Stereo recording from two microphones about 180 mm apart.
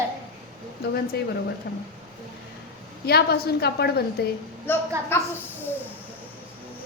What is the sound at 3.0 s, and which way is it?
Speech, 65° left (ahead or behind).